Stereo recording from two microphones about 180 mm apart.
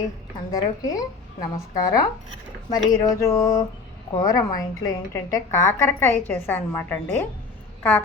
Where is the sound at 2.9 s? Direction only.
20° left (ahead or behind).